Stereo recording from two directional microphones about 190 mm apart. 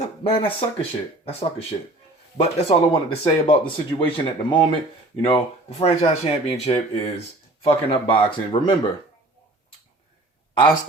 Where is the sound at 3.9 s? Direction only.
25° left (ahead or behind).